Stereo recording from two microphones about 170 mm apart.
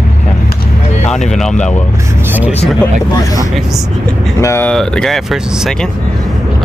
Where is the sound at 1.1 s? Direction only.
5° left (ahead or behind).